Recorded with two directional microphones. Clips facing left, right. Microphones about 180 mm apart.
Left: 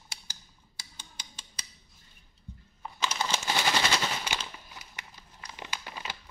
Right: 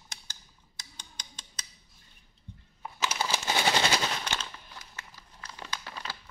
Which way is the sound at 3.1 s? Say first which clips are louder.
Right 1 dB; 5° right (ahead or behind).